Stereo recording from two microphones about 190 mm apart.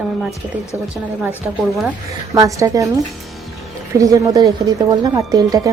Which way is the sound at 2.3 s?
15° right (ahead or behind).